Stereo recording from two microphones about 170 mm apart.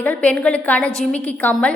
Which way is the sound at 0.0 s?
10° left (ahead or behind).